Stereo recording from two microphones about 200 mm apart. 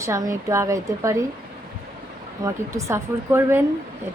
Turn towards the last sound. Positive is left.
turn(degrees=-10)  # may be behind; listen again after turning